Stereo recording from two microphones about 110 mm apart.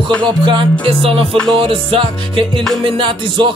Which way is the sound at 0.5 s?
50° right (ahead or behind).